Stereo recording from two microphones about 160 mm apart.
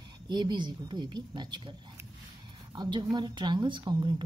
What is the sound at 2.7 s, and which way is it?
A woman's voice, 25° right (ahead or behind).